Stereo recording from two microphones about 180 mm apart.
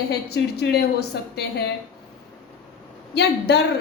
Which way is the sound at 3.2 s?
65° left (ahead or behind).